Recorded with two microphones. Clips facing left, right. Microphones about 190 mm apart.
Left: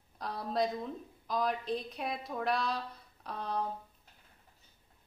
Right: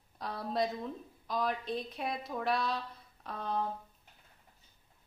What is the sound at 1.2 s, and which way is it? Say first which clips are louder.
A woman's voice: left 1 dB; centre (ahead or behind).